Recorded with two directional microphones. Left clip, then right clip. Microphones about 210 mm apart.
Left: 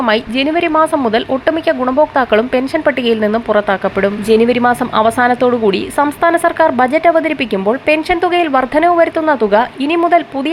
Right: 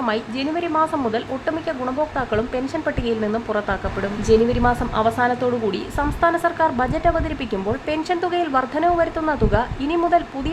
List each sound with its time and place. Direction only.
0.0 s a woman's voice: 25° left (ahead or behind)